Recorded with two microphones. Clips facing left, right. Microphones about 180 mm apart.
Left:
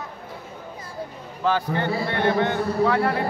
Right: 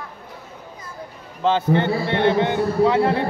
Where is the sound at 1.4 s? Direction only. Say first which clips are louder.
Right 5 dB; 25° right (ahead or behind).